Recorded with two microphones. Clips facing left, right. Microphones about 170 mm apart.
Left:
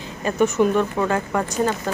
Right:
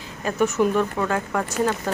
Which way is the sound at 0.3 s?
5° right (ahead or behind).